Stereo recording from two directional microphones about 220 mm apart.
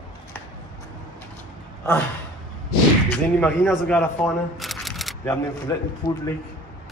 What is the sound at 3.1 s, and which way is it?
Speech, 5° left (ahead or behind).